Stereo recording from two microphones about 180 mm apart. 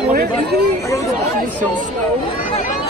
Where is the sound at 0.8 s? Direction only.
15° left (ahead or behind).